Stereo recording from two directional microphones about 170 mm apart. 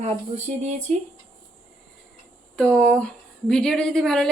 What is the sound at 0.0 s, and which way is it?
Speech, 40° right (ahead or behind).